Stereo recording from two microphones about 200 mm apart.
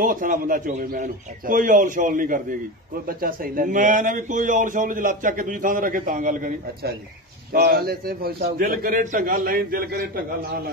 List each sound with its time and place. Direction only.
0.0 s a man's voice: 40° right (ahead or behind)